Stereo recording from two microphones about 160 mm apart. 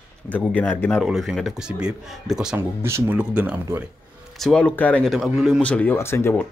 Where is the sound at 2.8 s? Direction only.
15° right (ahead or behind).